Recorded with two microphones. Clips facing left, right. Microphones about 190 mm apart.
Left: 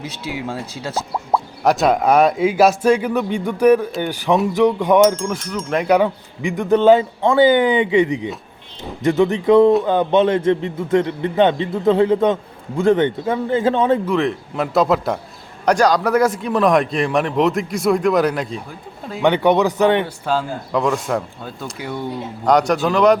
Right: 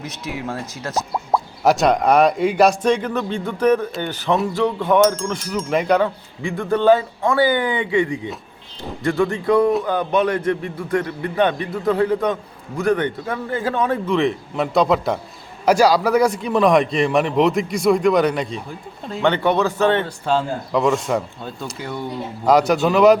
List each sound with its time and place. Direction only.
1.1 s a man's voice: centre (ahead or behind); by 4.9 s 15° left (ahead or behind)
4.9 s a man's voice: centre (ahead or behind)
6.0 s a man's voice: 15° left (ahead or behind)
14.1 s a man's voice: centre (ahead or behind); by 20.1 s 15° left (ahead or behind)
20.2 s a man's voice: centre (ahead or behind)